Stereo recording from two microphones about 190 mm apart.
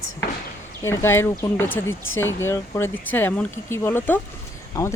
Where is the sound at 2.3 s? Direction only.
15° left (ahead or behind).